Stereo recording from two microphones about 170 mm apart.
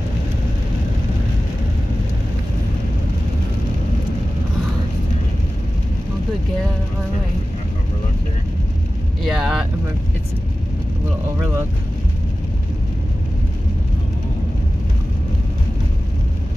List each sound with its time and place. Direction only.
9.2 s vehicle: 5° right (ahead or behind)
11.3 s speech: 15° right (ahead or behind)